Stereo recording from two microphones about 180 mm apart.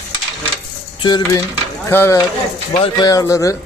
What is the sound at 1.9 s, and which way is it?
Speech, 10° left (ahead or behind).